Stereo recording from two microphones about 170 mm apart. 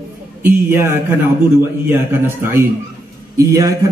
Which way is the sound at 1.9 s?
15° right (ahead or behind).